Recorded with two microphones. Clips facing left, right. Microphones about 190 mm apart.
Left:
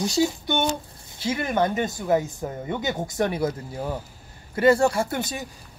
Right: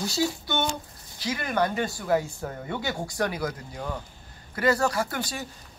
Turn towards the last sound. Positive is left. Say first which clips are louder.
# left 3 dB
turn(degrees=20)  # may be behind; listen again after turning